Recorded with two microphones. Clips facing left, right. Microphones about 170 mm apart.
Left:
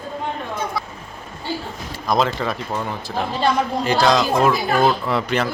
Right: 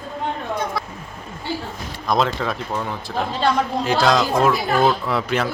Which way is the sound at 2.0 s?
Centre (ahead or behind).